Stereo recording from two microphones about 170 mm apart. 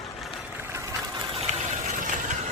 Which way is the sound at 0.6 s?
15° right (ahead or behind).